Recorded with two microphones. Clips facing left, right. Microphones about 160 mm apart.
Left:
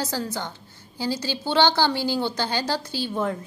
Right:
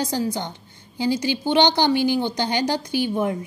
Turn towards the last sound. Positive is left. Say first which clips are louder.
# right 4 dB
turn(degrees=-15)  # may be behind; listen again after turning